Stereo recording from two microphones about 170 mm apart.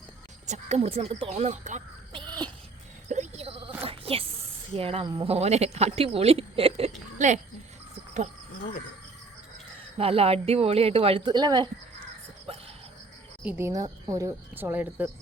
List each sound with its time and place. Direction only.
0.4 s speech: 40° right (ahead or behind)
2.1 s a sound: 25° right (ahead or behind)
3.1 s sheep: 40° right (ahead or behind)
3.8 s a sound: 35° right (ahead or behind)
4.7 s speech: 35° right (ahead or behind)
10.0 s speech: 35° right (ahead or behind)
13.4 s speech: 10° right (ahead or behind)